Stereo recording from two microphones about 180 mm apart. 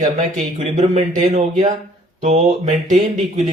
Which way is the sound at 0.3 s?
45° right (ahead or behind).